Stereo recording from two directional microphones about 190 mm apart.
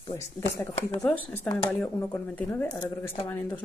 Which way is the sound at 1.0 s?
5° left (ahead or behind).